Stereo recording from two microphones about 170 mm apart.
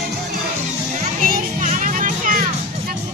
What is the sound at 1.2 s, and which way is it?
Music, 50° right (ahead or behind).